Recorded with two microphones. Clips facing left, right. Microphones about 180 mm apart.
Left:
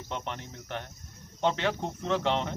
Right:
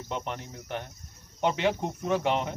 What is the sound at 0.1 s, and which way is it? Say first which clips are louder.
Speech: right 2 dB; 10° right (ahead or behind).